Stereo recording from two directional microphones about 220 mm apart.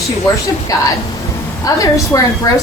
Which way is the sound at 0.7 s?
15° left (ahead or behind).